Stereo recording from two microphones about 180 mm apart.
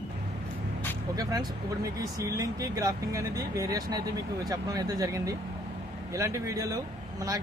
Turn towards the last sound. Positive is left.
turn(degrees=-20)  # may be behind; listen again after turning